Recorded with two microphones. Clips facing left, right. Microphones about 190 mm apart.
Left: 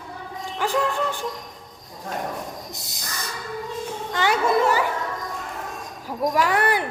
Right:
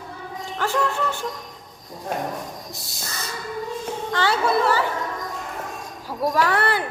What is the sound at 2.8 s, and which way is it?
A child's voice, 20° left (ahead or behind).